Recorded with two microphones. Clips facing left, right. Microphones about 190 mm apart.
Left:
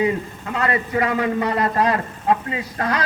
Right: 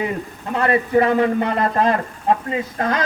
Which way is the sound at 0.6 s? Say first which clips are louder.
Right 5 dB; 30° right (ahead or behind).